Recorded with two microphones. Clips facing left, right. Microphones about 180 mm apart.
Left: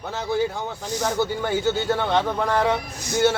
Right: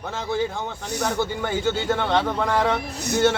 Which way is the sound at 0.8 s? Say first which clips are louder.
Left 1 dB; 65° right (ahead or behind).